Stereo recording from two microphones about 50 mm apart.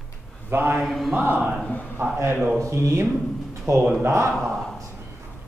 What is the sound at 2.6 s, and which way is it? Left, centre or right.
Speech, right.